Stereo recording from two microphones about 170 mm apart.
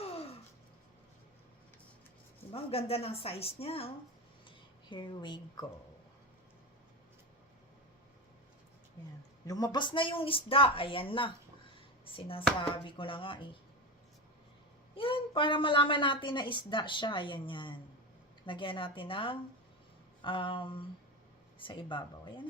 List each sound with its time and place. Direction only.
2.5 s speech: 35° left (ahead or behind)
9.5 s speech: 20° left (ahead or behind)
14.9 s a woman's voice: 30° left (ahead or behind)